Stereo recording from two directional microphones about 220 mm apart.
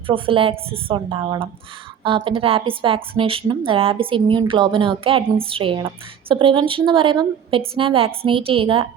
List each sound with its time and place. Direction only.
0.1 s a woman's voice: 25° right (ahead or behind)